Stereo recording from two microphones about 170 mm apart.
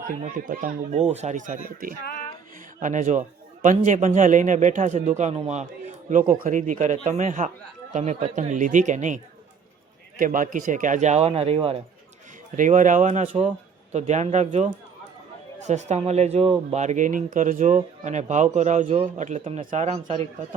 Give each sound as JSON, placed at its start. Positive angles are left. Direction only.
{"t": 0.4, "sound": "speech", "side_deg": -45}
{"t": 2.8, "sound": "speech", "side_deg": -45}
{"t": 12.5, "sound": "speech", "side_deg": -50}